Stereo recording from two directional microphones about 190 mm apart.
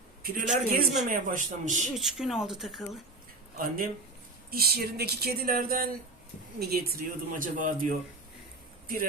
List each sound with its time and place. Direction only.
0.2 s a man's voice: 50° right (ahead or behind)
0.4 s speech: centre (ahead or behind)
1.0 s speech: 45° right (ahead or behind)
2.0 s speech: centre (ahead or behind)
4.5 s speech: 55° right (ahead or behind)